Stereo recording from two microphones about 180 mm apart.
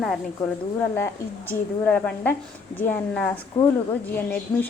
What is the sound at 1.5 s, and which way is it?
A woman's voice, 10° left (ahead or behind).